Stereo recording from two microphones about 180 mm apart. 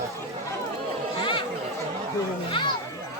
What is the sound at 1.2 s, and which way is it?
Chatter, 30° left (ahead or behind).